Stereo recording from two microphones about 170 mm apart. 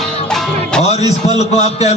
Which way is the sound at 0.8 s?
40° left (ahead or behind).